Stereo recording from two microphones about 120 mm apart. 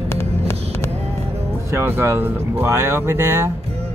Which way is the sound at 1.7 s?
20° right (ahead or behind).